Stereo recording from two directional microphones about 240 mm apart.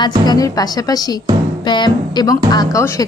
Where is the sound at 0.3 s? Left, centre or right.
Centre.